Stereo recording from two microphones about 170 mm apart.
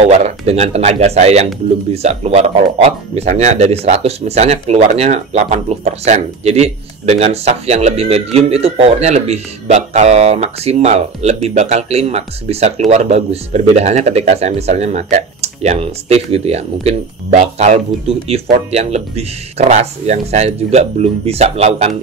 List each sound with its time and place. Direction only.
0.0 s speech: 40° right (ahead or behind)